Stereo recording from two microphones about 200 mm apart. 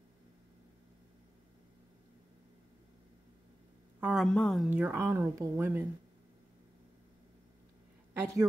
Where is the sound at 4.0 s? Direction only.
5° right (ahead or behind).